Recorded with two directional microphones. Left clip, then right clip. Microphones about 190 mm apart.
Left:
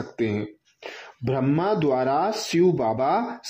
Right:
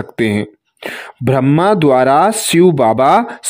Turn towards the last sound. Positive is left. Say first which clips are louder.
# right 12 dB
turn(degrees=-50)  # may be behind; listen again after turning